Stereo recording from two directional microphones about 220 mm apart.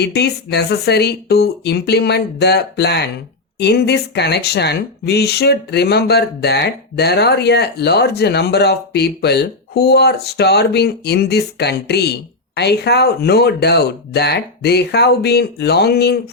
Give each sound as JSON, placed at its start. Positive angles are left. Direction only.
{"t": 0.0, "sound": "speech", "side_deg": 50}